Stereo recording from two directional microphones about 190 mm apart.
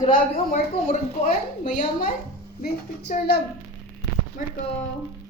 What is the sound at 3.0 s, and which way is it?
Speech, 40° left (ahead or behind).